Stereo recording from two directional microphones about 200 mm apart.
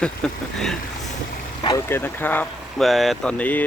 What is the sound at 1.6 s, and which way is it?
Speech, 15° left (ahead or behind).